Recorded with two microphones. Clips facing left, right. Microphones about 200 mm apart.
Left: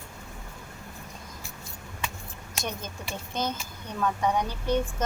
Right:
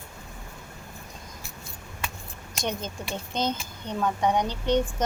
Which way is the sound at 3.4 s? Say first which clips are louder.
Right 3 dB; 20° right (ahead or behind).